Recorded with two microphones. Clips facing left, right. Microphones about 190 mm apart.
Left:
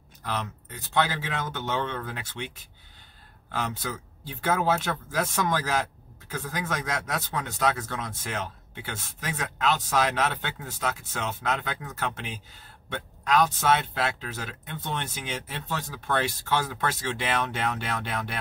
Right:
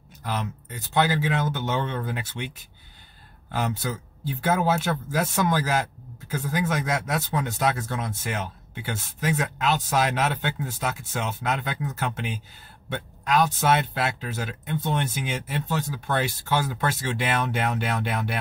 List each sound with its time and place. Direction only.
0.2 s speech: 10° right (ahead or behind)
4.4 s speech: 5° right (ahead or behind)